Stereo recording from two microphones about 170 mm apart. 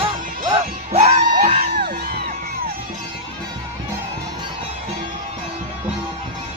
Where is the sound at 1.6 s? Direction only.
65° right (ahead or behind).